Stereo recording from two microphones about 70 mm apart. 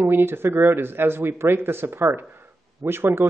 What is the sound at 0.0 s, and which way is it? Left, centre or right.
Speech, right.